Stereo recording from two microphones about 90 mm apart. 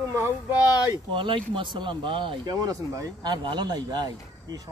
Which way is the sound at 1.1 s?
75° right (ahead or behind).